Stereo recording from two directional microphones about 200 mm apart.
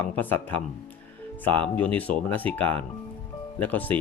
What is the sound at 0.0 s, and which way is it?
Speech, 10° left (ahead or behind).